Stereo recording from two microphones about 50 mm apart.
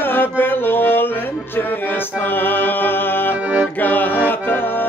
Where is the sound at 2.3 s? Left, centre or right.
Left.